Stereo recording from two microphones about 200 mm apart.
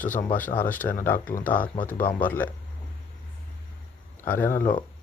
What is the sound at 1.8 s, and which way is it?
Speech, 45° left (ahead or behind).